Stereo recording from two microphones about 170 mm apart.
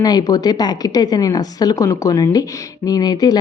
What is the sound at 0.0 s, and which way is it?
A woman's voice, 25° left (ahead or behind).